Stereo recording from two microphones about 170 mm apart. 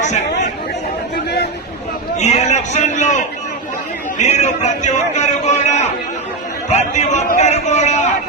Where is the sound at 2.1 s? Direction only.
40° left (ahead or behind).